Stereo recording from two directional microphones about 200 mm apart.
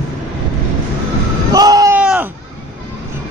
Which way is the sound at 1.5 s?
20° right (ahead or behind).